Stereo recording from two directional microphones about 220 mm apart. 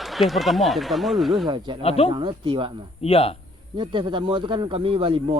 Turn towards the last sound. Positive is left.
turn(degrees=-25)  # may be behind; listen again after turning